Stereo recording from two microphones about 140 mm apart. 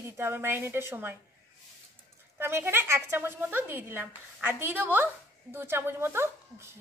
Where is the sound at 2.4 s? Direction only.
15° right (ahead or behind).